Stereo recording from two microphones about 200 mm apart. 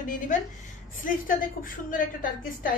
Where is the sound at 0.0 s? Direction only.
40° left (ahead or behind).